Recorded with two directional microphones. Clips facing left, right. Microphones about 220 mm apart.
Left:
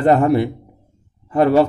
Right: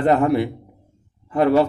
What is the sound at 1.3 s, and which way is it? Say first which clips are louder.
Speech: left 2 dB; 40° left (ahead or behind).